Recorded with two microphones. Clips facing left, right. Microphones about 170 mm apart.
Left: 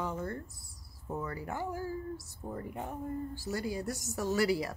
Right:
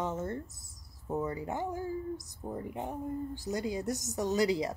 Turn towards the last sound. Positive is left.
turn(degrees=-20)  # may be behind; listen again after turning